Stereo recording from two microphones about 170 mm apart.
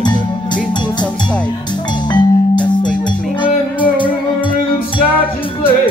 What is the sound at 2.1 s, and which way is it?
Music, 25° left (ahead or behind).